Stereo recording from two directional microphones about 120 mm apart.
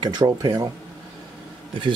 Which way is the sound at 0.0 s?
35° right (ahead or behind).